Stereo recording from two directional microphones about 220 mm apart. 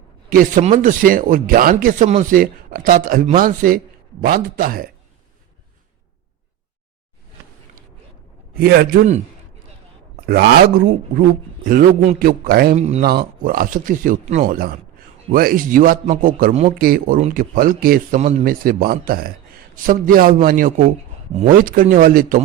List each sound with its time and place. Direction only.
0.3 s a man's voice: 35° right (ahead or behind)
8.6 s a man's voice: 45° right (ahead or behind)
12.7 s speech: 30° right (ahead or behind)
13.1 s a man's voice: 45° right (ahead or behind)